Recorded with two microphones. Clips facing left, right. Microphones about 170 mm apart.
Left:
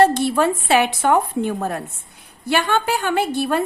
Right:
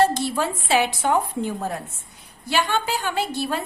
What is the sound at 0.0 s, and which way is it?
A woman's voice, 60° left (ahead or behind).